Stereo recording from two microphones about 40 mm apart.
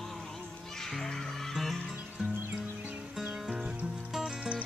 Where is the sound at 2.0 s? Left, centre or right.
Right.